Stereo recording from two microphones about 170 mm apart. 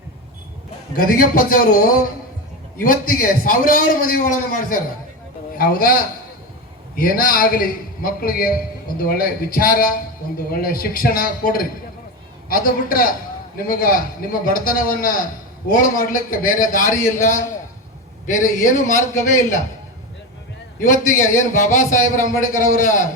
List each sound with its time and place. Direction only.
0.9 s a man's voice: 55° left (ahead or behind)
18.5 s a man's voice: 50° left (ahead or behind)
20.7 s a man's voice: 50° left (ahead or behind)